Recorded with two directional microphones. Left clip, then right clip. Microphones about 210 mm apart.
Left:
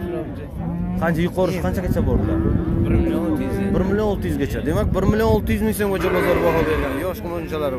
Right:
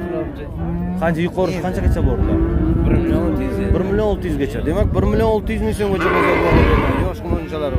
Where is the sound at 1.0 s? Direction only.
5° right (ahead or behind).